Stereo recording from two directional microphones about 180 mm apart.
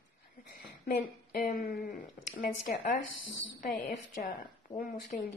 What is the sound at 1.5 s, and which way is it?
Speech, 55° left (ahead or behind).